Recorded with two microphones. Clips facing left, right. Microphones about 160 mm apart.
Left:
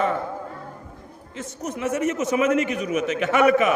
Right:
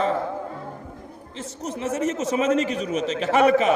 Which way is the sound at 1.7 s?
30° right (ahead or behind).